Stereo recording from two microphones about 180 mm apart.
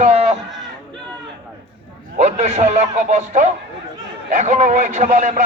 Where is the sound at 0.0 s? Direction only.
35° right (ahead or behind).